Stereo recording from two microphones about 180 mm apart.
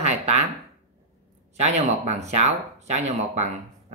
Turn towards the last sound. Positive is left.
turn(degrees=-40)  # may be behind; listen again after turning